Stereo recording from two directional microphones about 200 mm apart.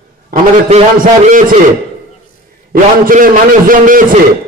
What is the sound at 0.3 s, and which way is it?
Speech, 30° right (ahead or behind).